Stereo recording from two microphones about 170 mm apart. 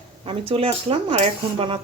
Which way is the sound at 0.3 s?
35° right (ahead or behind).